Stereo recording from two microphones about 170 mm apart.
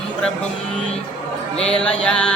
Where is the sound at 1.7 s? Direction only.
5° left (ahead or behind).